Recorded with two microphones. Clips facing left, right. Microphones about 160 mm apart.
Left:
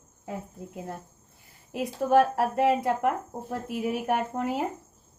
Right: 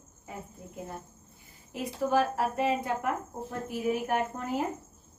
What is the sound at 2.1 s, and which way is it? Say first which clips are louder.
A woman's voice: left 6 dB; 65° left (ahead or behind).